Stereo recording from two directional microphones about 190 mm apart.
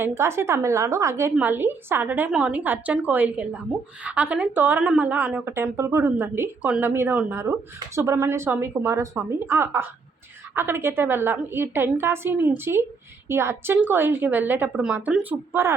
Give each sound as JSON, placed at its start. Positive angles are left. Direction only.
{"t": 0.0, "sound": "a woman's voice", "side_deg": -15}